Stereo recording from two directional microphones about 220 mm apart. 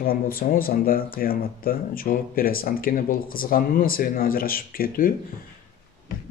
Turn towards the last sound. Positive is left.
turn(degrees=40)  # may be behind; listen again after turning